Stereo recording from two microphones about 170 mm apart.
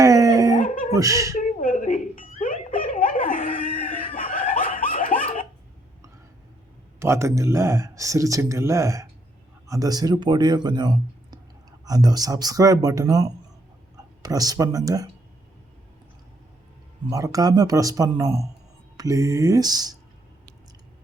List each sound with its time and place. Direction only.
0.0 s chicken: 20° right (ahead or behind)
0.5 s a sound: 50° left (ahead or behind)
0.9 s speech: 20° right (ahead or behind)
1.4 s a sound: 50° left (ahead or behind)
7.0 s speech: 15° right (ahead or behind)
17.1 s speech: 20° right (ahead or behind)